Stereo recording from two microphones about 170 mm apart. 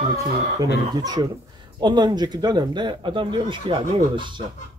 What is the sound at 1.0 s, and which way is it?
Speech, 25° right (ahead or behind).